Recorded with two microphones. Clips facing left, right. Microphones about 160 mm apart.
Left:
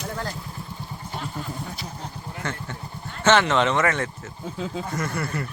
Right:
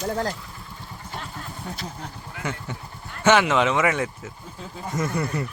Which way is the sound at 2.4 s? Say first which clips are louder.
Right 1 dB; 10° right (ahead or behind).